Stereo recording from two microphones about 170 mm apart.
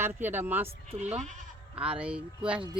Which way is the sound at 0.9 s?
40° right (ahead or behind).